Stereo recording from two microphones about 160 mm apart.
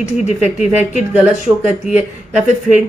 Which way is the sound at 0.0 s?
45° left (ahead or behind).